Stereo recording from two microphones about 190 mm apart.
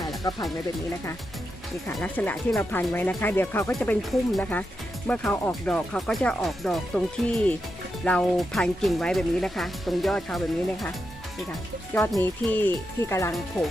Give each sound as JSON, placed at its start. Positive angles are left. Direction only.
{"t": 0.2, "sound": "speech", "side_deg": 20}
{"t": 1.9, "sound": "speech", "side_deg": 5}
{"t": 11.9, "sound": "speech", "side_deg": 15}